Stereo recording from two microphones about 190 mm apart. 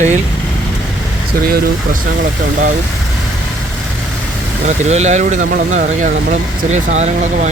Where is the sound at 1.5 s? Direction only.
50° right (ahead or behind).